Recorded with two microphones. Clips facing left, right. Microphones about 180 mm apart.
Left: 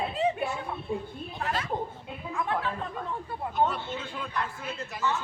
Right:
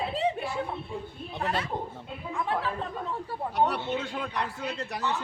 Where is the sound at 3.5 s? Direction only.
70° right (ahead or behind).